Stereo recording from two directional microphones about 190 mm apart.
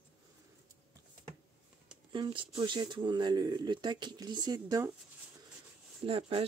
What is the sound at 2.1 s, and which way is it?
Speech, 25° right (ahead or behind).